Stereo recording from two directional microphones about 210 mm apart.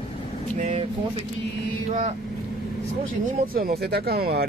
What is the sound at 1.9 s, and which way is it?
Speech, 35° right (ahead or behind).